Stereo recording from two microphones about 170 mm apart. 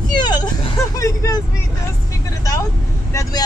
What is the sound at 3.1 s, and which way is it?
Speech, 20° left (ahead or behind).